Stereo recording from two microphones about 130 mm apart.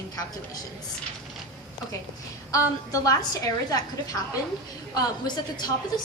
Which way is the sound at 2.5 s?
25° left (ahead or behind).